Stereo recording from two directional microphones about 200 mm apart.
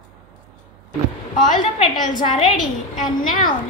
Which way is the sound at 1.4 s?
40° left (ahead or behind).